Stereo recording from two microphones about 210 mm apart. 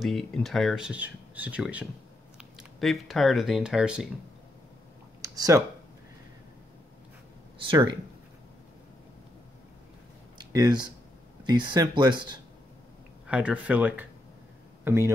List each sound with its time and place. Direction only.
0.0 s speech: centre (ahead or behind)
5.2 s a sound: 15° right (ahead or behind)
7.5 s speech: 20° right (ahead or behind)
10.3 s a sound: 20° right (ahead or behind)
11.4 s speech: 20° right (ahead or behind)
13.3 s speech: 5° right (ahead or behind)